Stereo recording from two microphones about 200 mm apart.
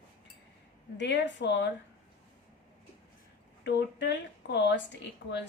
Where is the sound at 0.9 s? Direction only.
60° left (ahead or behind).